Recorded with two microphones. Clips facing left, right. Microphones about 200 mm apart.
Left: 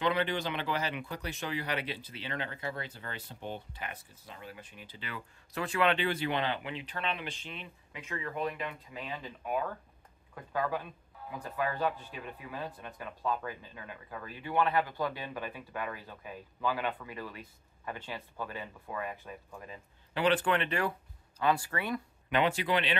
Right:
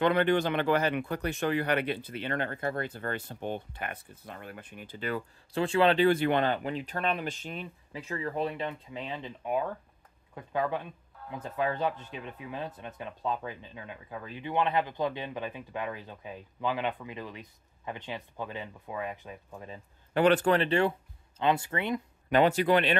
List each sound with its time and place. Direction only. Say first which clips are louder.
0.0 s speech: right 6 dB; 55° right (ahead or behind)
5.5 s speech: right 5 dB; 30° right (ahead or behind)
20.2 s speech: right 5 dB; 45° right (ahead or behind); by 22.0 s 20° right (ahead or behind)
22.3 s speech: right 6 dB; 45° right (ahead or behind)